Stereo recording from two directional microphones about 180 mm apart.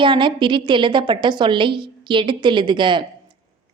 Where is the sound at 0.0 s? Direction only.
25° right (ahead or behind).